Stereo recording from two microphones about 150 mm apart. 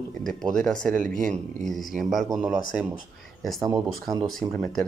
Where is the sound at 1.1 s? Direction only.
60° right (ahead or behind).